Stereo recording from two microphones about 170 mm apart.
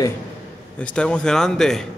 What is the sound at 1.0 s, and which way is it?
Speech, 5° left (ahead or behind).